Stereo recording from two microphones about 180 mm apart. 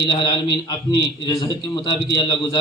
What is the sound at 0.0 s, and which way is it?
A man's voice, 25° left (ahead or behind).